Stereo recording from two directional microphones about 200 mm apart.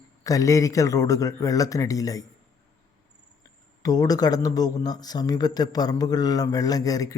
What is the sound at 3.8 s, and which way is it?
Speech, 20° left (ahead or behind).